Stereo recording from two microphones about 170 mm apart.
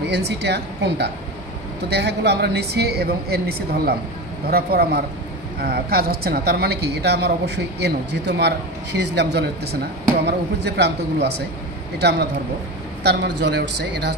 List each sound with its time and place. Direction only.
0.1 s a man's voice: 90° right